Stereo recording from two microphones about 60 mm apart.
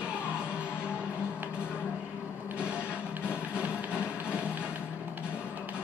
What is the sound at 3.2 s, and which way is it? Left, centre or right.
Music, right.